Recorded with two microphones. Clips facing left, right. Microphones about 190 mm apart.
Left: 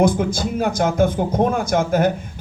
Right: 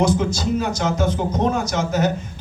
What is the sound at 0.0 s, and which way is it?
Speech, 55° left (ahead or behind).